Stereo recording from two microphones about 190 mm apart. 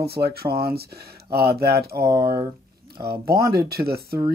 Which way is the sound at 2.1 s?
15° right (ahead or behind).